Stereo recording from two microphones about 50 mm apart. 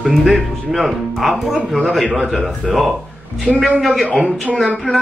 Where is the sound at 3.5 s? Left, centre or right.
Centre.